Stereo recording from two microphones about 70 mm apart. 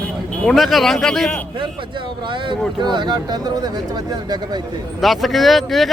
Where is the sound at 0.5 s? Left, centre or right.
Centre.